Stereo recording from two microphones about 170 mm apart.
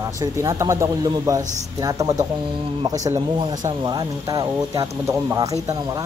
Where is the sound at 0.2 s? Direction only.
15° right (ahead or behind).